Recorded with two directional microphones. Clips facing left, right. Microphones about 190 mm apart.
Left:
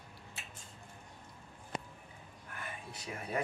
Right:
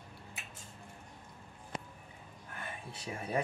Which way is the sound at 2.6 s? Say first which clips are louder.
Right 2 dB; 25° right (ahead or behind).